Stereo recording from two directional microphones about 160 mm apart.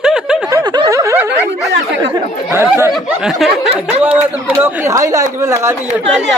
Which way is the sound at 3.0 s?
5° right (ahead or behind).